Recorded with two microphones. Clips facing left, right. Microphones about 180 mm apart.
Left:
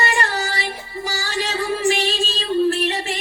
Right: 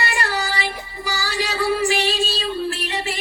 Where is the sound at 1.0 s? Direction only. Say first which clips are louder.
Left 4 dB; 20° right (ahead or behind).